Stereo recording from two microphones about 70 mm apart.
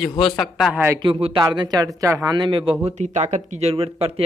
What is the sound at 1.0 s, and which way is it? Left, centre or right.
Speech, right.